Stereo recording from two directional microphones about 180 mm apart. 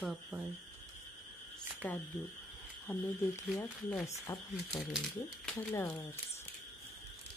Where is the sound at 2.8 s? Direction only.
10° left (ahead or behind).